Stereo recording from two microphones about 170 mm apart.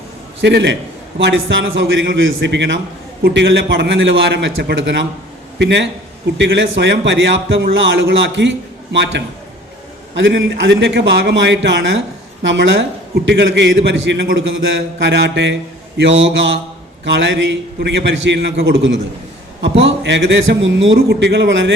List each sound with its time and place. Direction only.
0.4 s a man's voice: 90° right
3.2 s a man's voice: 75° right (ahead or behind); by 21.6 s 90° right